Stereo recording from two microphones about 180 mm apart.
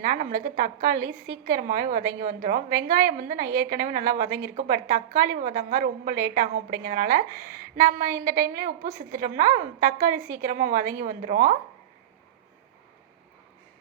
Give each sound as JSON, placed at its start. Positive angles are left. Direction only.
{"t": 0.0, "sound": "a woman's voice", "side_deg": -50}